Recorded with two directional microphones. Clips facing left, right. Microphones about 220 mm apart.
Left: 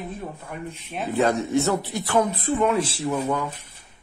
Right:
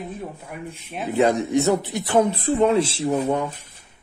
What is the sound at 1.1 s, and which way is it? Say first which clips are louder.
A man's voice: right 2 dB; 15° right (ahead or behind).